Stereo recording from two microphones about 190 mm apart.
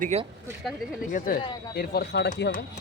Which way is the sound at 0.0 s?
35° right (ahead or behind).